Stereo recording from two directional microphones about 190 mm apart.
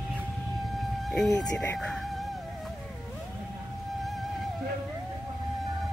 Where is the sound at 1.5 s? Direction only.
5° left (ahead or behind).